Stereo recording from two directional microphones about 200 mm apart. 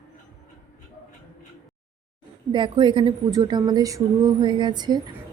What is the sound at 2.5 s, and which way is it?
A woman's voice, 25° right (ahead or behind).